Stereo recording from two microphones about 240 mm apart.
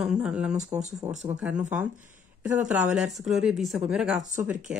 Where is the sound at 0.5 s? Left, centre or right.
Right.